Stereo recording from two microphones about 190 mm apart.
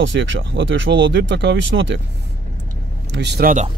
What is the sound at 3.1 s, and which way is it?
Speech, 65° right (ahead or behind).